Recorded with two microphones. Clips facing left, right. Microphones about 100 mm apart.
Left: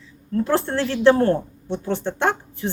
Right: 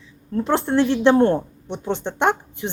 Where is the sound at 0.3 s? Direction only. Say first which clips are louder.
Right 2 dB; 20° right (ahead or behind).